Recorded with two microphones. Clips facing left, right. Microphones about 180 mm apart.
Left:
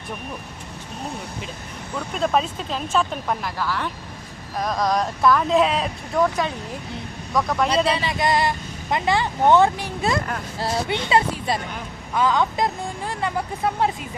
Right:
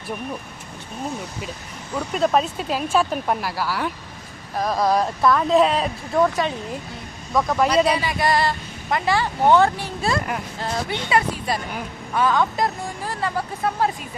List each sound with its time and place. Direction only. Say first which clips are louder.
2.1 s speech: right 2 dB; 5° right (ahead or behind)
7.9 s speech: right 1 dB; 25° left (ahead or behind)